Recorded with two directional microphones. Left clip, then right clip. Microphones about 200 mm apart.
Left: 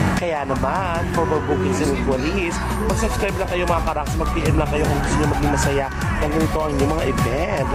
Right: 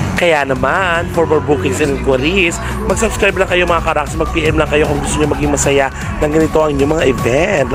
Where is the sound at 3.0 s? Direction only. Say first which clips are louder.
Right 9 dB; 30° right (ahead or behind).